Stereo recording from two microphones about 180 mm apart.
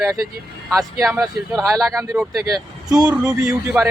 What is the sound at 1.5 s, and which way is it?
A man's voice, 20° right (ahead or behind).